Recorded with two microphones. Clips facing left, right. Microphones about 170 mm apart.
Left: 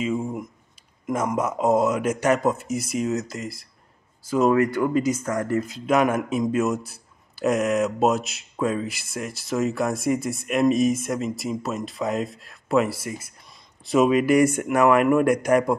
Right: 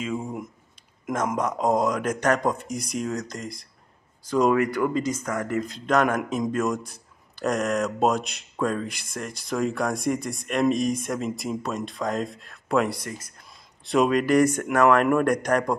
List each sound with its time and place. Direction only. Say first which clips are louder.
0.0 s a sound: left 4 dB; centre (ahead or behind)
1.0 s speech: left 2 dB; 5° left (ahead or behind)
4.6 s speech: left 2 dB; 25° left (ahead or behind)
4.9 s speech: left 4 dB; 10° left (ahead or behind)